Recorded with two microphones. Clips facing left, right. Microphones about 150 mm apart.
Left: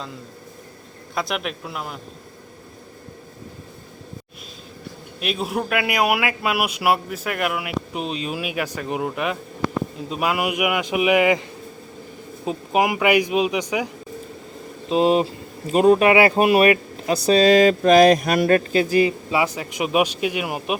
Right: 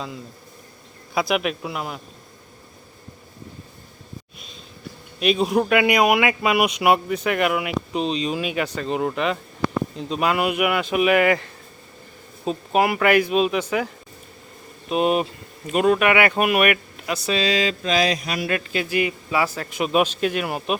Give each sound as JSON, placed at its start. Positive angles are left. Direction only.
{"t": 1.1, "sound": "speech", "side_deg": -5}
{"t": 5.2, "sound": "a man's voice", "side_deg": 0}
{"t": 12.5, "sound": "a man's voice", "side_deg": 15}
{"t": 14.8, "sound": "speech", "side_deg": 25}